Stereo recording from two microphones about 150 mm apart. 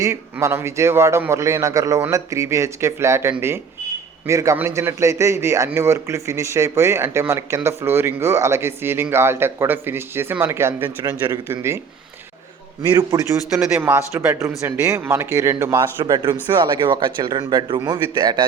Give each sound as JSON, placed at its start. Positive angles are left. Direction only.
{"t": 0.0, "sound": "a man's voice", "side_deg": -20}
{"t": 12.9, "sound": "a man's voice", "side_deg": -25}